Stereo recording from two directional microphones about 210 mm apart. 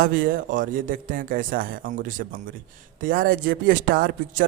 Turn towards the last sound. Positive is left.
turn(degrees=-45)  # may be behind; listen again after turning